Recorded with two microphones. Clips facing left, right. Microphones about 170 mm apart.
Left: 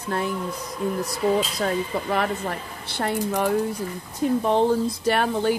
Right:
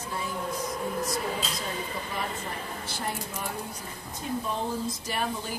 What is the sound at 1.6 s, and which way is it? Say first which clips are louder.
Speech: left 10 dB; 70° left (ahead or behind).